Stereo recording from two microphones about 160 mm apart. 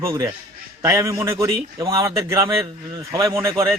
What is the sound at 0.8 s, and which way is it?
A man's voice, 20° right (ahead or behind).